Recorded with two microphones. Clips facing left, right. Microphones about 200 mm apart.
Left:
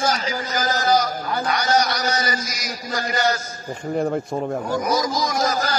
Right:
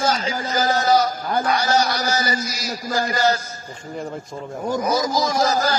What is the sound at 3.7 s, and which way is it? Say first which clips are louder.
Speech: left 8 dB; 60° left (ahead or behind).